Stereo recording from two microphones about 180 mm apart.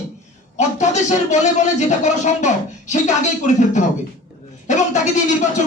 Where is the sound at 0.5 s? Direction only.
40° left (ahead or behind).